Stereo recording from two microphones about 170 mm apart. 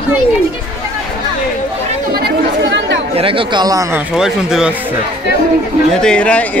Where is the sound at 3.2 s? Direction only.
30° right (ahead or behind).